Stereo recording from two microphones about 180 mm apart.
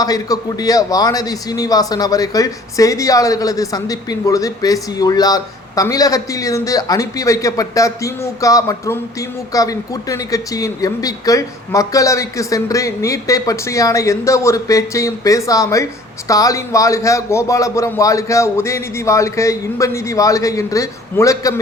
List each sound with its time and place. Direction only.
0.0 s a man's voice: 20° left (ahead or behind)